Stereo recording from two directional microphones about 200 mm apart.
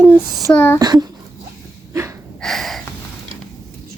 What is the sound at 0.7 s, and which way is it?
Speech, 20° right (ahead or behind).